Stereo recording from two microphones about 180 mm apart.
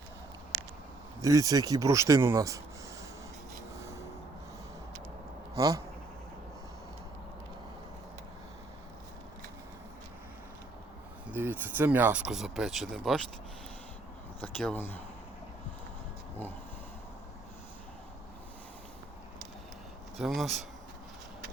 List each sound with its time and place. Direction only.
1.2 s speech: 20° right (ahead or behind)
5.5 s speech: 20° right (ahead or behind)
11.3 s speech: 10° right (ahead or behind)
14.6 s speech: 10° left (ahead or behind)
20.1 s speech: centre (ahead or behind)